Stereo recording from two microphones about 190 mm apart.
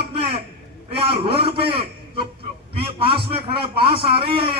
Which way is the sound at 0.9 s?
30° right (ahead or behind).